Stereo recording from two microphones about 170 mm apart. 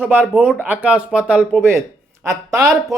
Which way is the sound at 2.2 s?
20° right (ahead or behind).